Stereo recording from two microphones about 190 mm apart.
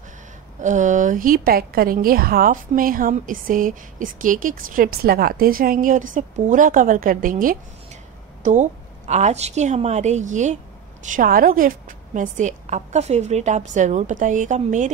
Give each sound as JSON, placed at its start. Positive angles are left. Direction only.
{"t": 0.6, "sound": "a woman's voice", "side_deg": -40}